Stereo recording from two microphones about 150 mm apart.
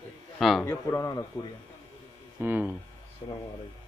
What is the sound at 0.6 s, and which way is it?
Speech, 20° left (ahead or behind).